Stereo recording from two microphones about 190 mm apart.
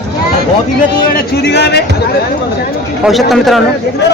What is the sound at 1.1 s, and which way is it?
Speech, 60° left (ahead or behind).